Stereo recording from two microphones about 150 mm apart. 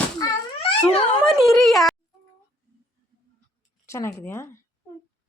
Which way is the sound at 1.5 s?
Centre (ahead or behind).